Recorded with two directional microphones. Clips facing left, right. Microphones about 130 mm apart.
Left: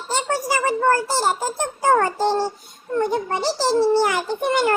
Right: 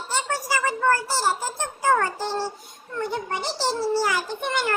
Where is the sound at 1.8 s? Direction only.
45° left (ahead or behind).